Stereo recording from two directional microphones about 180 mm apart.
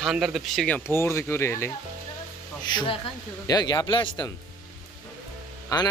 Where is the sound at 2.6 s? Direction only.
25° left (ahead or behind).